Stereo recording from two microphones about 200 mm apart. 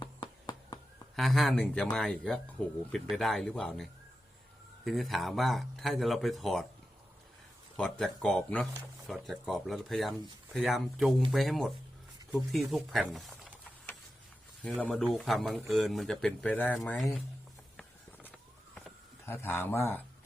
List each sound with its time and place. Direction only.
0.0 s a sound: 20° left (ahead or behind)
1.1 s speech: centre (ahead or behind)
4.9 s speech: centre (ahead or behind)
7.8 s speech: centre (ahead or behind)
17.7 s a sound: 5° left (ahead or behind)
19.2 s speech: 10° left (ahead or behind)